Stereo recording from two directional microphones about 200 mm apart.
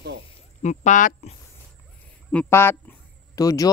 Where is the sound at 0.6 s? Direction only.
35° left (ahead or behind).